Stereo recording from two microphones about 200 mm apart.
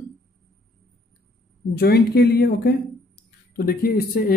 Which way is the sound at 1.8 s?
50° left (ahead or behind).